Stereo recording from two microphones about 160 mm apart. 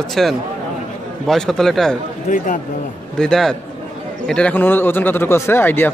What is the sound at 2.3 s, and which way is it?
Speech, 50° left (ahead or behind).